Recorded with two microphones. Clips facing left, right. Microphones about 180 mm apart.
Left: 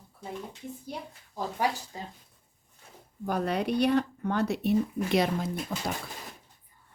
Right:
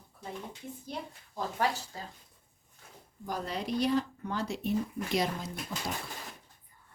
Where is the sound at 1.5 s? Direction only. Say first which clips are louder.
Left 2 dB; 20° left (ahead or behind).